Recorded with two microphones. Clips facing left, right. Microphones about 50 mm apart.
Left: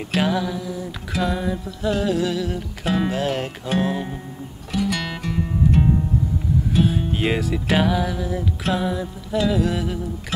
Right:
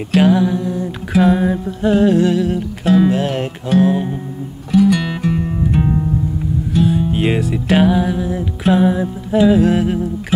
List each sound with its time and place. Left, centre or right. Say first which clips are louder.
0.3 s music: right 9 dB; centre
2.0 s music: right 10 dB; centre
2.8 s music: right 9 dB; centre
3.2 s music: right 4 dB; centre
6.7 s music: right 6 dB; centre
7.1 s music: right 5 dB; centre
8.7 s music: right 9 dB; right